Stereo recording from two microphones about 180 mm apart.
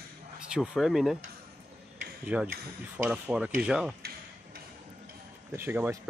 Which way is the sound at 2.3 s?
10° right (ahead or behind).